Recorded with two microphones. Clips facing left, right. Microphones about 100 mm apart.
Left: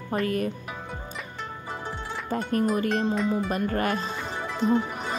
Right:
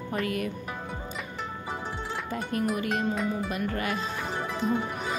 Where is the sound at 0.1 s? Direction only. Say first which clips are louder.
Left 4 dB; 40° left (ahead or behind).